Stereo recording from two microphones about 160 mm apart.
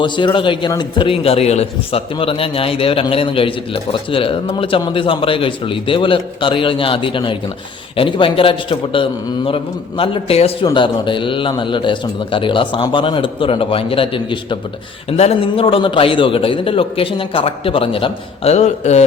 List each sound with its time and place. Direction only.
0.0 s a man's voice: 30° left (ahead or behind)